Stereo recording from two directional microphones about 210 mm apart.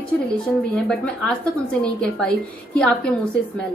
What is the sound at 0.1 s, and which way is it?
A woman's voice, 5° left (ahead or behind).